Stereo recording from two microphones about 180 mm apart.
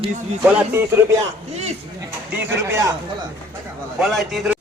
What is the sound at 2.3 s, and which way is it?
Speech, 15° right (ahead or behind).